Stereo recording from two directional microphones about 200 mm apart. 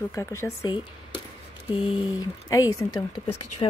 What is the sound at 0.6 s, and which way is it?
Speech, 25° left (ahead or behind).